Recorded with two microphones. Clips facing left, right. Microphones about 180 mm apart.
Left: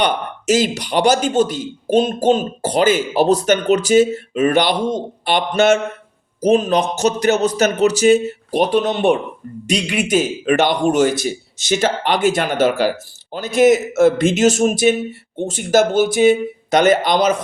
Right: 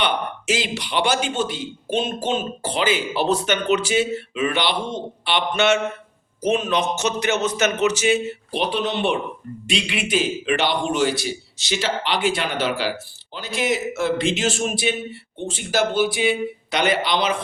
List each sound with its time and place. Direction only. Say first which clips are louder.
0.0 s a man's voice: left 4 dB; 45° left (ahead or behind)